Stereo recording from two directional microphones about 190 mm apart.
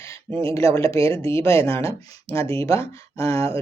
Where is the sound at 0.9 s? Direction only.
30° right (ahead or behind).